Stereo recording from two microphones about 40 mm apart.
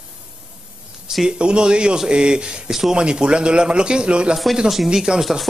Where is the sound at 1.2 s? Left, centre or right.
Right.